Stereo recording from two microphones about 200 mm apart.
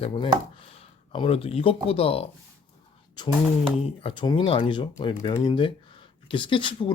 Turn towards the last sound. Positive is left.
turn(degrees=25)  # may be behind; listen again after turning